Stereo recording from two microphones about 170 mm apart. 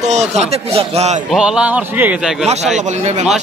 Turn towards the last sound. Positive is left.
turn(degrees=-45)  # may be behind; listen again after turning